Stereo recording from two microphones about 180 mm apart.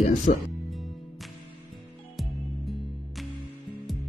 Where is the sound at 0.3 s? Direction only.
45° left (ahead or behind).